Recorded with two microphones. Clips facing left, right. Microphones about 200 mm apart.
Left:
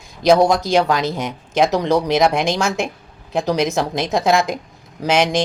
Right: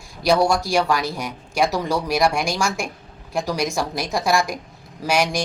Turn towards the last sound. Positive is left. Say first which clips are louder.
# left 4 dB
turn(degrees=20)  # may be behind; listen again after turning